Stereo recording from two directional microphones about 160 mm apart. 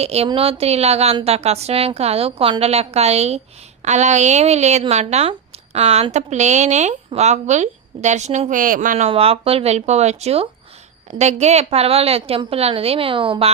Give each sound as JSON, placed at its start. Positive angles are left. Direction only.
{"t": 0.0, "sound": "a woman's voice", "side_deg": -40}
{"t": 9.0, "sound": "a woman's voice", "side_deg": -35}